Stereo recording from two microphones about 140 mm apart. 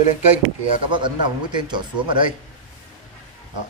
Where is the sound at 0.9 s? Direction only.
35° right (ahead or behind).